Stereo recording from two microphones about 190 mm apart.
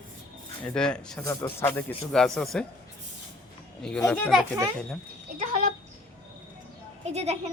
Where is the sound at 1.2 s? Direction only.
15° left (ahead or behind).